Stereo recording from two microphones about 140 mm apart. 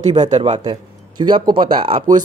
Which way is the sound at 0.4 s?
40° right (ahead or behind).